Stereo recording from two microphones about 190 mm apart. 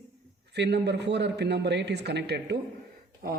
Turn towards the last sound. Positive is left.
turn(degrees=-50)  # may be behind; listen again after turning